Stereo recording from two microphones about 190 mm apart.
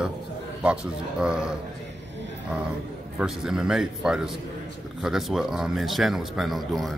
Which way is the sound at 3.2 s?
5° right (ahead or behind).